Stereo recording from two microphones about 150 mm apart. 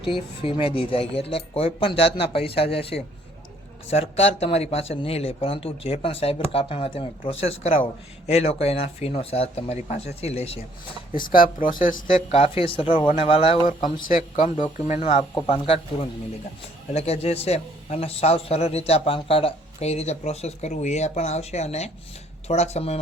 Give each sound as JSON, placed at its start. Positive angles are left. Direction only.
{"t": 0.0, "sound": "a man's voice", "side_deg": 35}
{"t": 11.6, "sound": "speech", "side_deg": 65}
{"t": 12.3, "sound": "speech", "side_deg": 40}
{"t": 14.8, "sound": "a man's voice", "side_deg": 50}